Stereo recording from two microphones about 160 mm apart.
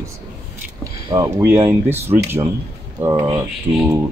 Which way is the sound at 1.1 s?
20° right (ahead or behind).